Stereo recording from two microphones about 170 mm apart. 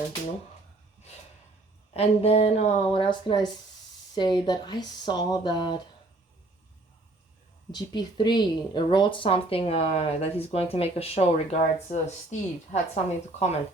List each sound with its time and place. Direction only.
1.9 s a woman's voice: 35° left (ahead or behind)
7.7 s a woman's voice: 25° left (ahead or behind); by 13.6 s 40° left (ahead or behind)